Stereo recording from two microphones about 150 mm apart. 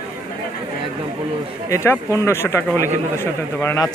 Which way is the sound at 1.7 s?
20° left (ahead or behind).